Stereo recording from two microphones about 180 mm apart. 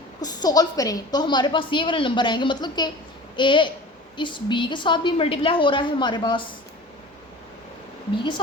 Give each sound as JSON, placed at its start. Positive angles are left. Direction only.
{"t": 0.2, "sound": "a woman's voice", "side_deg": 20}
{"t": 8.1, "sound": "a woman's voice", "side_deg": 25}